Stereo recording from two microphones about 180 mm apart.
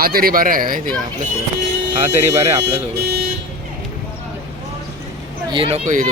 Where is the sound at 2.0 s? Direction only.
40° right (ahead or behind).